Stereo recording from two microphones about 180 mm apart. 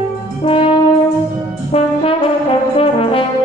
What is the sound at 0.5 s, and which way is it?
Brass instrument, 30° left (ahead or behind).